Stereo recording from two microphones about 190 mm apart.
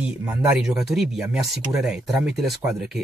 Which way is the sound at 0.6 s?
5° right (ahead or behind).